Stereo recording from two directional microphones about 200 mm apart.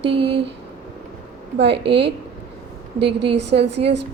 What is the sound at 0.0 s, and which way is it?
Speech, 60° right (ahead or behind).